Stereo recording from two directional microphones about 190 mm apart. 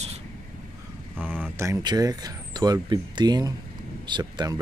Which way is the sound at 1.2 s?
10° right (ahead or behind).